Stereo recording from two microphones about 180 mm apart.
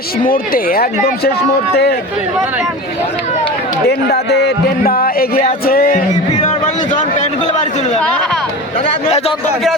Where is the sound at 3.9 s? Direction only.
65° left (ahead or behind).